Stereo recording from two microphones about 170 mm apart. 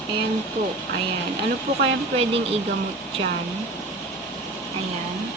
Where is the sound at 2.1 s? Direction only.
35° right (ahead or behind).